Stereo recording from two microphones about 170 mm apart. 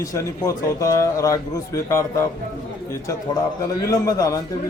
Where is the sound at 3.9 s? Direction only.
20° left (ahead or behind).